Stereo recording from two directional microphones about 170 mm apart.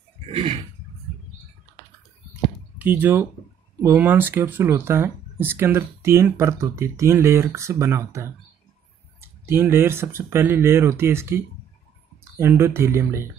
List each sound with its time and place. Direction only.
0.3 s a sound: 35° right (ahead or behind)
2.8 s speech: 10° right (ahead or behind)
9.5 s speech: 15° right (ahead or behind)